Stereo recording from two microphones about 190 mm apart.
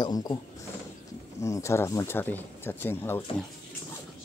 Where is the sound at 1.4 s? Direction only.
15° left (ahead or behind).